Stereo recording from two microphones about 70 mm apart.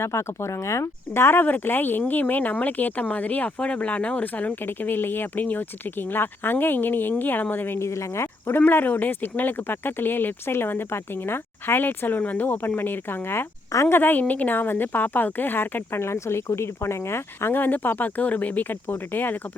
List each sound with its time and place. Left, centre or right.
0.0 s speech: left